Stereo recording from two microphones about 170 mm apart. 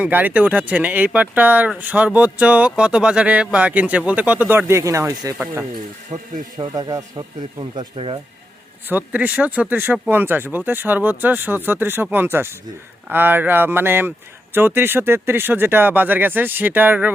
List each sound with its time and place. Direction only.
0.0 s speech: 10° right (ahead or behind); by 8.2 s 30° right (ahead or behind)
8.9 s speech: 10° right (ahead or behind)